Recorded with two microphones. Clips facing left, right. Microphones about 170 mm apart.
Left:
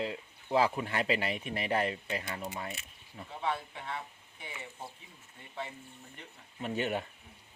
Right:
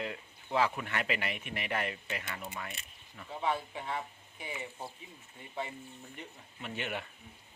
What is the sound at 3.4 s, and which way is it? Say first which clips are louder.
Speech: right 2 dB; 5° right (ahead or behind).